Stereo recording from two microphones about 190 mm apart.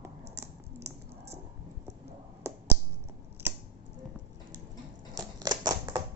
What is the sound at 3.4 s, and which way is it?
Computer keyboard, 10° right (ahead or behind).